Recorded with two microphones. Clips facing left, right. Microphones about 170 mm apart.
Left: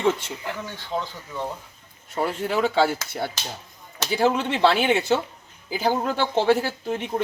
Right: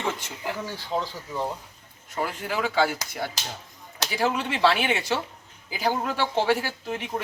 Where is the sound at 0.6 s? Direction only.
35° right (ahead or behind).